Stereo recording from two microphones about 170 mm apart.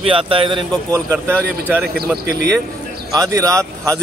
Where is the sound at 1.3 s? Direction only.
5° left (ahead or behind).